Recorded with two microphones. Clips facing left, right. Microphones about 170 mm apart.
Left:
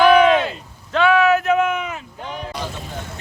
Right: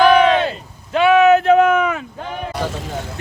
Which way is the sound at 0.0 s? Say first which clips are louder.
Right 1 dB; 35° right (ahead or behind).